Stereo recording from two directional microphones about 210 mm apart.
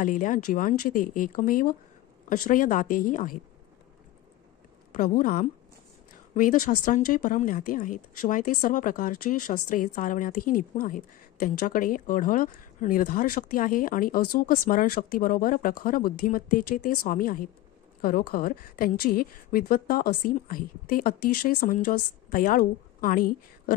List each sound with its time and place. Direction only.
0.0 s a woman's voice: 40° left (ahead or behind)
4.9 s a woman's voice: 40° left (ahead or behind)